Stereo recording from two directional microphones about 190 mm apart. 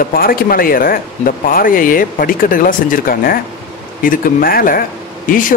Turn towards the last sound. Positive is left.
turn(degrees=45)  # may be behind; listen again after turning